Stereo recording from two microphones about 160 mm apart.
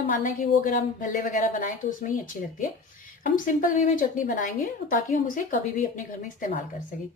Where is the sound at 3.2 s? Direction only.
55° left (ahead or behind).